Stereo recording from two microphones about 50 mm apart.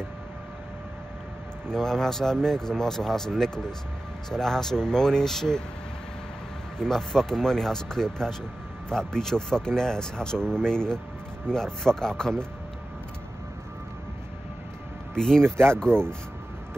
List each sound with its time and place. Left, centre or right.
1.7 s speech: centre
6.8 s speech: centre
15.1 s speech: centre
15.4 s speech: right